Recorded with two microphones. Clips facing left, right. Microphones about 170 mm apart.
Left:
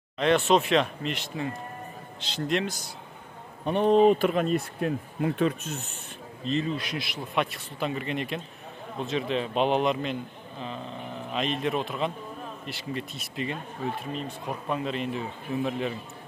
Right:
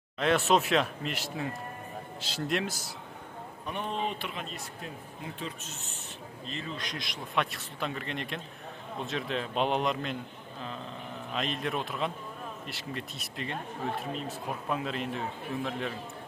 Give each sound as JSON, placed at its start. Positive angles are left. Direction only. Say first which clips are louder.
{"t": 0.2, "sound": "speech", "louder": "left 3 dB", "side_deg": -5}
{"t": 3.6, "sound": "speech", "louder": "left 15 dB", "side_deg": 35}
{"t": 6.8, "sound": "speech", "louder": "left 5 dB", "side_deg": 5}
{"t": 11.3, "sound": "speech", "louder": "left 5 dB", "side_deg": 0}